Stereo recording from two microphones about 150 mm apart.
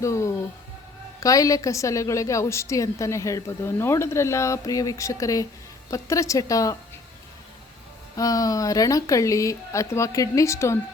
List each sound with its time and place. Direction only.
0.0 s music: 20° left (ahead or behind)
1.2 s a woman's voice: 20° left (ahead or behind)
8.1 s a woman's voice: 20° left (ahead or behind)